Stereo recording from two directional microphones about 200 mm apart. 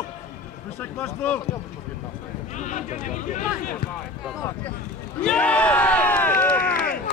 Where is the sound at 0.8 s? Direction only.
10° left (ahead or behind).